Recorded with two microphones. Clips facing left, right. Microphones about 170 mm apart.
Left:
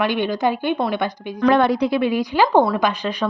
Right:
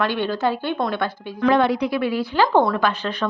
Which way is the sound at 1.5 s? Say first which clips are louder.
Left 1 dB; 50° left (ahead or behind).